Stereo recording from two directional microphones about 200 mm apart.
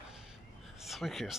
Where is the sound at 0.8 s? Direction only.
Centre (ahead or behind).